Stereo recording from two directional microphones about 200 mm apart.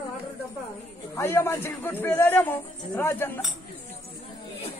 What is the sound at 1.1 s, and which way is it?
A man's voice, 10° left (ahead or behind).